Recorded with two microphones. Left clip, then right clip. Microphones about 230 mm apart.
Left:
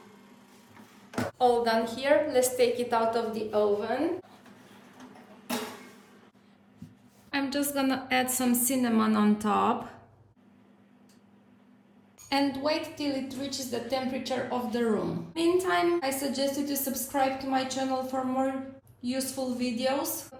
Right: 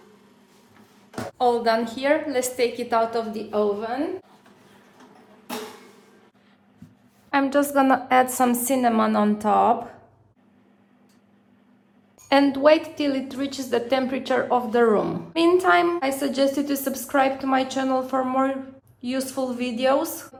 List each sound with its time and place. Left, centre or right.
1.4 s a woman's voice: right
7.3 s a woman's voice: centre
12.2 s a woman's voice: centre